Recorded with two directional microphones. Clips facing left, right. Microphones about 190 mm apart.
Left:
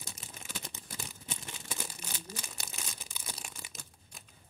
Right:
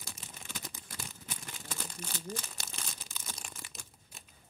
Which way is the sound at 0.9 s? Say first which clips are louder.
Left 4 dB; 25° left (ahead or behind).